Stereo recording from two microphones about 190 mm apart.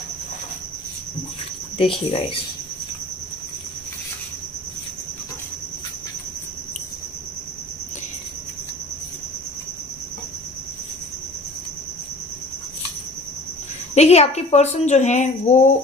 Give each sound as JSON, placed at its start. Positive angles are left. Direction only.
{"t": 1.8, "sound": "speech", "side_deg": 30}
{"t": 13.9, "sound": "a woman's voice", "side_deg": 35}